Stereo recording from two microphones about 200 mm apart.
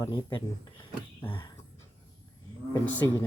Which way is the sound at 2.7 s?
10° left (ahead or behind).